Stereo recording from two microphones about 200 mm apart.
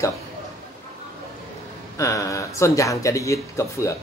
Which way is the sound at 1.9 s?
15° left (ahead or behind).